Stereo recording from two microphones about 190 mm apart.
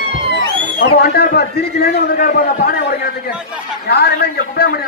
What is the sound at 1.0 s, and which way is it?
A man's voice, 55° left (ahead or behind).